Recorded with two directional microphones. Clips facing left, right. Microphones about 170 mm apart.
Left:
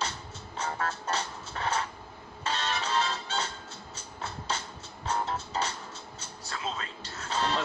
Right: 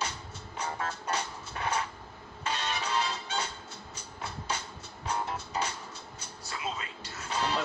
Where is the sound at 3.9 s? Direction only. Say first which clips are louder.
Left 1 dB; 10° right (ahead or behind).